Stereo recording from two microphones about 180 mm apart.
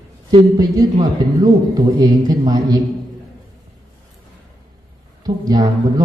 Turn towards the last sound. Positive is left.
turn(degrees=-20)  # may be behind; listen again after turning